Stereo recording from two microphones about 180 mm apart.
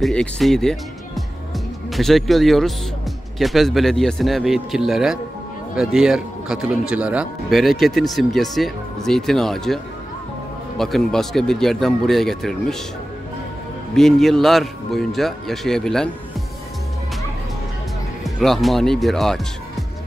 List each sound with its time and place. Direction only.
0.0 s a man's voice: 5° left (ahead or behind)
10.8 s a man's voice: centre (ahead or behind)
13.9 s a man's voice: centre (ahead or behind)
18.2 s a man's voice: centre (ahead or behind)